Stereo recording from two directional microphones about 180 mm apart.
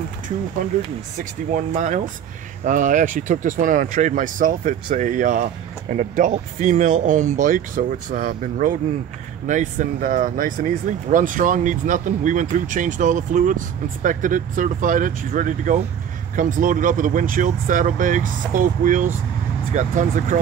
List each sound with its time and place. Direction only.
0.6 s speech: 50° right (ahead or behind)